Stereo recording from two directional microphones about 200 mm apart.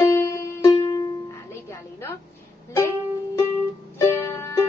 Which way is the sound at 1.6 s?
10° left (ahead or behind).